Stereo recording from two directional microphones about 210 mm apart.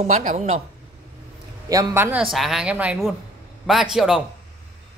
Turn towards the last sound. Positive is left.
turn(degrees=0)  # may be behind; listen again after turning